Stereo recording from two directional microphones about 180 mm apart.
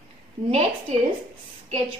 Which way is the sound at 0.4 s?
50° right (ahead or behind).